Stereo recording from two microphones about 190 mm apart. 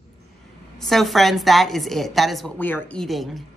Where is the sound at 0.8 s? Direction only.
Centre (ahead or behind).